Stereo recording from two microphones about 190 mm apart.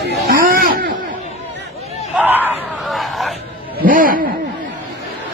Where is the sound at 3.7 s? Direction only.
45° right (ahead or behind).